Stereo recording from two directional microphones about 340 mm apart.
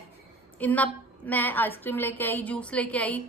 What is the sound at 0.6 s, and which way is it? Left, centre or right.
A woman's voice, centre.